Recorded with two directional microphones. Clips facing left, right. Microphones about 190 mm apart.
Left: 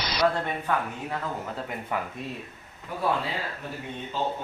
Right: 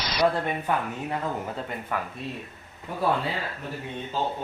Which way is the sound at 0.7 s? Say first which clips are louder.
Even; 15° right (ahead or behind).